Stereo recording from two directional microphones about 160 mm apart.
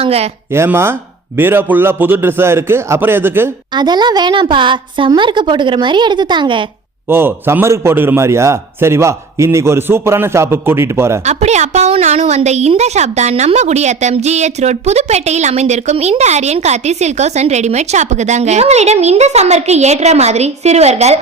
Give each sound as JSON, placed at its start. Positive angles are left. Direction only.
{"t": 0.0, "sound": "speech", "side_deg": -40}
{"t": 0.5, "sound": "a man's voice", "side_deg": -15}
{"t": 3.8, "sound": "a woman's voice", "side_deg": -25}
{"t": 7.1, "sound": "a man's voice", "side_deg": -15}
{"t": 11.3, "sound": "a woman's voice", "side_deg": -45}